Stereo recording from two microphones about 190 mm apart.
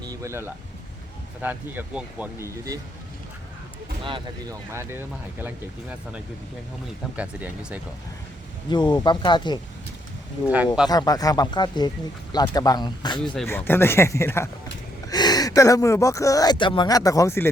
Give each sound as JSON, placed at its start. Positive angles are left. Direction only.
{"t": 0.0, "sound": "music", "side_deg": -15}
{"t": 1.4, "sound": "speech", "side_deg": -10}
{"t": 4.7, "sound": "speech", "side_deg": -15}
{"t": 8.7, "sound": "speech", "side_deg": 25}
{"t": 10.4, "sound": "speech", "side_deg": -10}
{"t": 10.8, "sound": "speech", "side_deg": 20}
{"t": 13.3, "sound": "speech", "side_deg": 10}